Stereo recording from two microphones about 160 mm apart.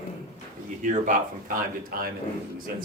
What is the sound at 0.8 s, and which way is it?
Speech, 50° right (ahead or behind).